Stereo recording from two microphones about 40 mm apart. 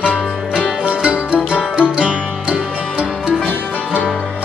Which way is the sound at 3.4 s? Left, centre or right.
Left.